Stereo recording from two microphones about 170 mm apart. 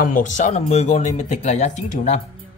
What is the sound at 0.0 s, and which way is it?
Speech, 50° left (ahead or behind).